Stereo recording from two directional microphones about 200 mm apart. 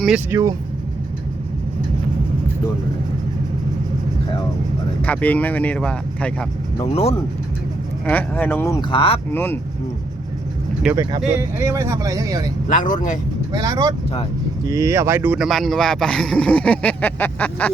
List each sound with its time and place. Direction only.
0.0 s speech: 5° right (ahead or behind)
5.0 s speech: 5° left (ahead or behind)
6.9 s speech: 30° left (ahead or behind)
8.0 s speech: 10° left (ahead or behind)
8.9 s speech: 30° left (ahead or behind)
9.3 s speech: 10° left (ahead or behind)
10.8 s speech: 5° right (ahead or behind)
12.6 s speech: 40° left (ahead or behind)
13.5 s speech: 20° right (ahead or behind); by 17.7 s 10° left (ahead or behind)